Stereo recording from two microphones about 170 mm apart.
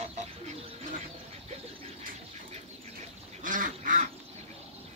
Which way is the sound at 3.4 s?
50° right (ahead or behind).